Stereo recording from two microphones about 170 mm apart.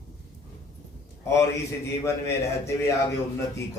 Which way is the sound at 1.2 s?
15° left (ahead or behind).